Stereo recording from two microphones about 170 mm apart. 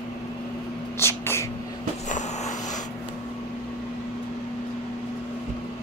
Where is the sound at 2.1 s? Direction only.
45° left (ahead or behind).